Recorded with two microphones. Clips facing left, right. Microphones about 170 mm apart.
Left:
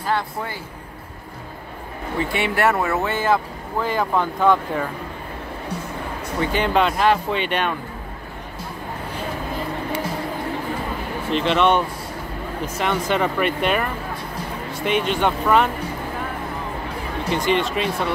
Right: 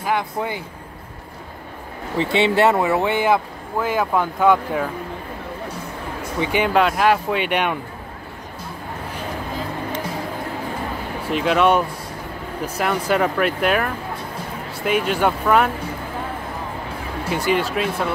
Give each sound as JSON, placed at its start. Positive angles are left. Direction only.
{"t": 0.0, "sound": "speech", "side_deg": -15}
{"t": 2.1, "sound": "speech", "side_deg": -25}
{"t": 6.4, "sound": "speech", "side_deg": -10}
{"t": 11.2, "sound": "speech", "side_deg": -5}
{"t": 17.3, "sound": "speech", "side_deg": -5}